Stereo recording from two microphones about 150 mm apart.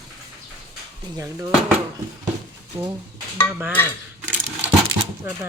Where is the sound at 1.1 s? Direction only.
20° right (ahead or behind).